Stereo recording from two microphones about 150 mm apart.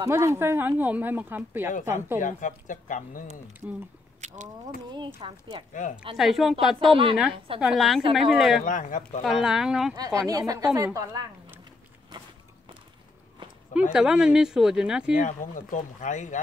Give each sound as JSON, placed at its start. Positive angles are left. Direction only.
{"t": 0.0, "sound": "speech", "side_deg": -20}
{"t": 2.2, "sound": "speech", "side_deg": 60}
{"t": 3.6, "sound": "speech", "side_deg": -5}
{"t": 4.9, "sound": "speech", "side_deg": -30}
{"t": 5.7, "sound": "speech", "side_deg": 60}
{"t": 6.1, "sound": "speech", "side_deg": 0}
{"t": 8.6, "sound": "speech", "side_deg": 60}
{"t": 9.2, "sound": "speech", "side_deg": -5}
{"t": 9.9, "sound": "speech", "side_deg": -25}
{"t": 13.7, "sound": "speech", "side_deg": -5}
{"t": 15.1, "sound": "speech", "side_deg": 60}